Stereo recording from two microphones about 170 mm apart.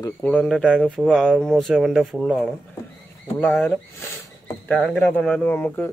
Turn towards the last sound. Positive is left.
turn(degrees=10)  # may be behind; listen again after turning